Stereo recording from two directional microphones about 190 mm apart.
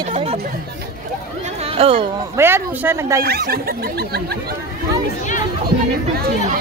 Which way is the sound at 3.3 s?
55° right (ahead or behind).